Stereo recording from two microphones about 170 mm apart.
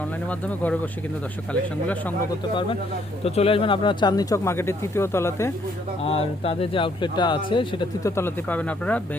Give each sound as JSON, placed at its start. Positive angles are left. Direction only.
{"t": 0.0, "sound": "speech", "side_deg": 10}
{"t": 3.2, "sound": "speech", "side_deg": 35}
{"t": 6.0, "sound": "speech", "side_deg": 35}
{"t": 8.1, "sound": "speech", "side_deg": 10}